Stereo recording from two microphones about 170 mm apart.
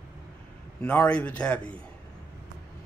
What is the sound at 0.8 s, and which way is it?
Speech, 5° left (ahead or behind).